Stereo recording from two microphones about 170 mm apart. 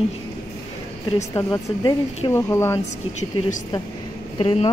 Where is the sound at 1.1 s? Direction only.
20° left (ahead or behind).